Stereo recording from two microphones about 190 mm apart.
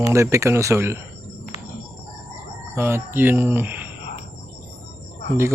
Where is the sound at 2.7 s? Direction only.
10° right (ahead or behind).